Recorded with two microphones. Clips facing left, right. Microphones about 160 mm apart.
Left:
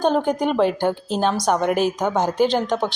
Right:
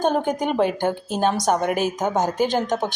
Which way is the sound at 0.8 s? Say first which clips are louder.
Left 1 dB; 45° right (ahead or behind).